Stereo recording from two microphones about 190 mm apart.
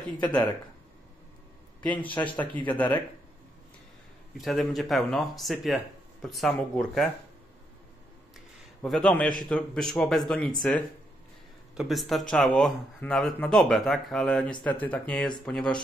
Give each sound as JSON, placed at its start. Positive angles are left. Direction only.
{"t": 0.2, "sound": "speech", "side_deg": 10}
{"t": 2.0, "sound": "speech", "side_deg": 10}
{"t": 4.4, "sound": "speech", "side_deg": 0}
{"t": 8.8, "sound": "speech", "side_deg": 5}
{"t": 11.7, "sound": "speech", "side_deg": 0}